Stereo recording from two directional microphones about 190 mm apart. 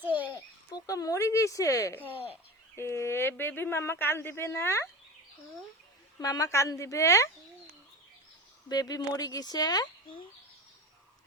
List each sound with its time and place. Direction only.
0.3 s speech: 20° left (ahead or behind)
6.1 s speech: 20° left (ahead or behind)
8.7 s speech: 20° left (ahead or behind)